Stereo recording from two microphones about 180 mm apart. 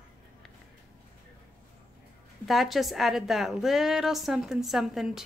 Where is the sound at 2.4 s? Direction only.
Centre (ahead or behind).